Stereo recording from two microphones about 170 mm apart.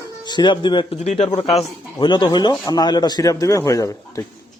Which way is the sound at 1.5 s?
25° left (ahead or behind).